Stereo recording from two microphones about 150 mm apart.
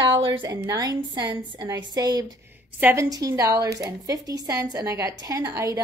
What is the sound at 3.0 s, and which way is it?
A woman's voice, 25° right (ahead or behind).